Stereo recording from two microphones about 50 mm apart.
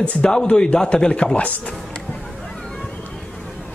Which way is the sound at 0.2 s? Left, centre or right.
Centre.